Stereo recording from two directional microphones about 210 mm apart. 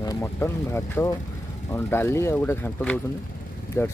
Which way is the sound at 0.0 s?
15° left (ahead or behind).